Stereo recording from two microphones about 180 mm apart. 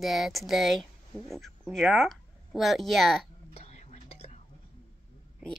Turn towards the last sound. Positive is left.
turn(degrees=40)  # may be behind; listen again after turning